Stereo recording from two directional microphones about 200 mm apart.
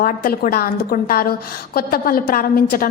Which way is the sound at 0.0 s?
45° left (ahead or behind).